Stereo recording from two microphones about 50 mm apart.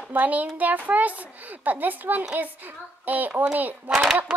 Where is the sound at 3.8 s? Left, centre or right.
Centre.